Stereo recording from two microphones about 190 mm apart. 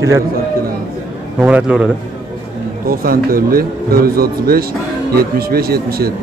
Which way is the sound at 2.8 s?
50° right (ahead or behind).